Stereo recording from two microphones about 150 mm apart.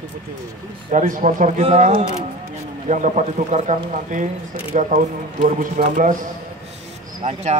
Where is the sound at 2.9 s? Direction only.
55° right (ahead or behind).